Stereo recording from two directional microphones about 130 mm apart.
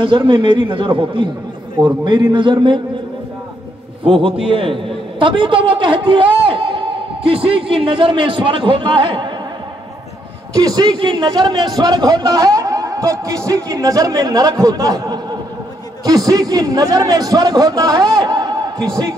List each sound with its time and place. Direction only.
0.0 s a man's voice: 40° right (ahead or behind)
4.0 s a man's voice: 45° right (ahead or behind)
6.4 s music: 40° right (ahead or behind)
7.2 s a man's voice: 45° right (ahead or behind)
10.5 s a man's voice: 30° right (ahead or behind)